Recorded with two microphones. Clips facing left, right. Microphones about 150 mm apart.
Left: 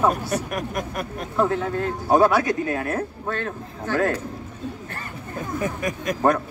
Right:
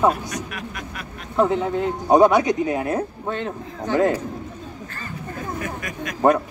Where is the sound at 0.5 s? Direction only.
45° left (ahead or behind).